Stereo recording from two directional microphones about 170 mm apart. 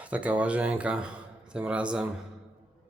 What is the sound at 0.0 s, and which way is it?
Speech, 10° right (ahead or behind).